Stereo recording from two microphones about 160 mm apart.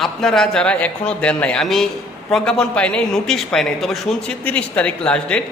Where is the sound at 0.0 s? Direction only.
Centre (ahead or behind).